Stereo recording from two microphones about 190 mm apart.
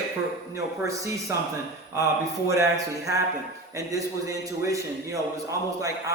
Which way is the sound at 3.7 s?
15° right (ahead or behind).